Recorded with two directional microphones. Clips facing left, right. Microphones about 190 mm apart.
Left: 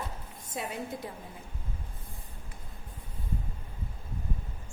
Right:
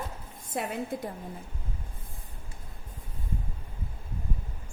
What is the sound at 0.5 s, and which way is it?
Speech, 55° right (ahead or behind).